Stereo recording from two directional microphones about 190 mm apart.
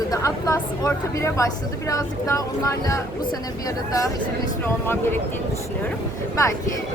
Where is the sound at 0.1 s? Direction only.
15° left (ahead or behind).